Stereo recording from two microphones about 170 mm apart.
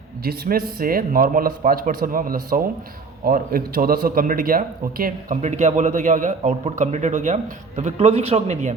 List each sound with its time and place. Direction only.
0.3 s a man's voice: 60° right (ahead or behind); by 8.7 s 40° right (ahead or behind)